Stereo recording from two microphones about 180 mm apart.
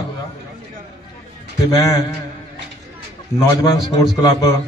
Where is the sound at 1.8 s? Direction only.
20° left (ahead or behind).